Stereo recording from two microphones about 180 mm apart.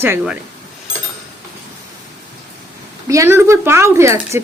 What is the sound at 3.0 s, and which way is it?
Speech, 15° right (ahead or behind).